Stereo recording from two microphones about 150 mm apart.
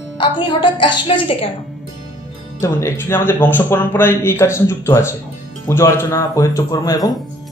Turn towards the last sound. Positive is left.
turn(degrees=25)  # may be behind; listen again after turning